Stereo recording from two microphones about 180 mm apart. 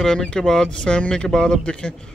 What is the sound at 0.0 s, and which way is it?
Speech, 5° left (ahead or behind).